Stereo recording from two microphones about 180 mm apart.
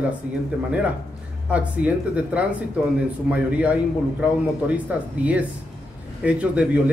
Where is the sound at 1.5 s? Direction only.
5° right (ahead or behind).